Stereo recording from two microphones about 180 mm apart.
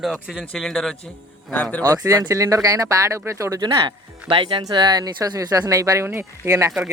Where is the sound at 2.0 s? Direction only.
20° right (ahead or behind).